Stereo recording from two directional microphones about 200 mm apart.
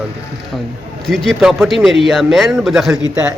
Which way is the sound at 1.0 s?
Centre (ahead or behind).